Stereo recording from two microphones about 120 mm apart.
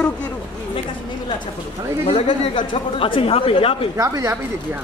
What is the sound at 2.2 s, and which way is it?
Speech, 40° left (ahead or behind).